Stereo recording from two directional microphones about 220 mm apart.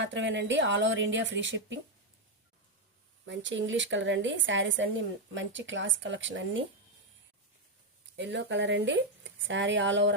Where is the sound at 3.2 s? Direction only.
55° right (ahead or behind).